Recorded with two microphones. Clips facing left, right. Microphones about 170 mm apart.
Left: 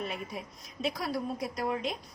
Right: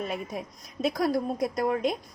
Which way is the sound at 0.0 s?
45° right (ahead or behind).